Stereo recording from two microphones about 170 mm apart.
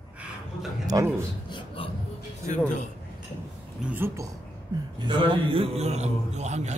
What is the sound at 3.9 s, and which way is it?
Speech, 10° right (ahead or behind).